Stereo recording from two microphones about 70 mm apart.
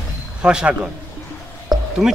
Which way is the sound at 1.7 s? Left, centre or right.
Centre.